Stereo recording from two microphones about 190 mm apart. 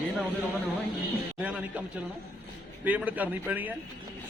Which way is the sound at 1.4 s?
5° right (ahead or behind).